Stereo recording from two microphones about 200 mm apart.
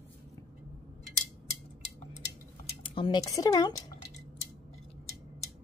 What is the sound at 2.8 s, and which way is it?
Speech, 25° left (ahead or behind).